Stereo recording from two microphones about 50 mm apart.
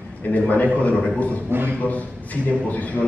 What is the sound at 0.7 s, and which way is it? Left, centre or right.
A man's voice, left.